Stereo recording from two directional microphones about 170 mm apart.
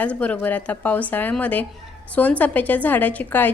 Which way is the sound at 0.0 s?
10° left (ahead or behind).